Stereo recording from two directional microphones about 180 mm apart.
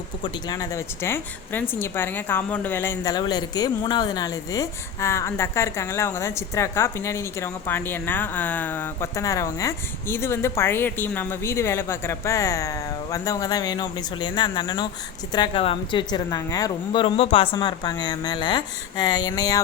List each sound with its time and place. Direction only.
0.2 s a woman's voice: 20° left (ahead or behind)